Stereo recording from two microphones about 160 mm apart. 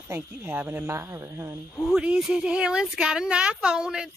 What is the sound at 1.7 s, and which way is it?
Speech, 5° right (ahead or behind).